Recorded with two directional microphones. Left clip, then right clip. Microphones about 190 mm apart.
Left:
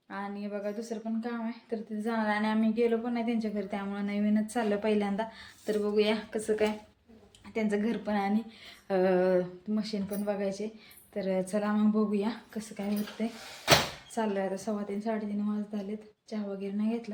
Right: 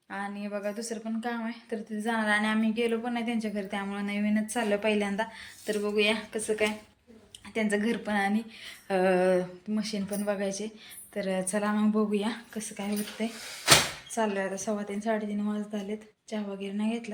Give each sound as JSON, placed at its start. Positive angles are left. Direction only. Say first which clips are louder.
{"t": 0.1, "sound": "a woman's voice", "louder": "right 2 dB", "side_deg": 5}
{"t": 7.5, "sound": "a woman's voice", "louder": "right 2 dB", "side_deg": 5}